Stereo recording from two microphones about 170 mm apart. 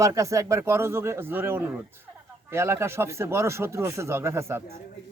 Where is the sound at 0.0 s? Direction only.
20° right (ahead or behind).